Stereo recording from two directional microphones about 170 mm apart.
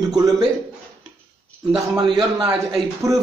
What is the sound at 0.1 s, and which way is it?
Speech, 20° right (ahead or behind).